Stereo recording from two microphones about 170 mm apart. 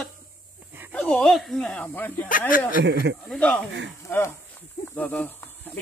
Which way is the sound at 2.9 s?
90° right.